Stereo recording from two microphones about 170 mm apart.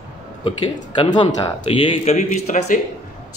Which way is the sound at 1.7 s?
30° left (ahead or behind).